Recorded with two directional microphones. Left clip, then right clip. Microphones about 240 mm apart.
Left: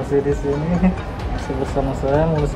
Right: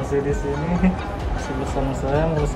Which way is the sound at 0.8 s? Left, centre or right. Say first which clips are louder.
Left 1 dB; centre.